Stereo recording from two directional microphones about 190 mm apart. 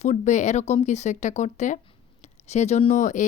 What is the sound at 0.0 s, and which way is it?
Speech, 40° left (ahead or behind).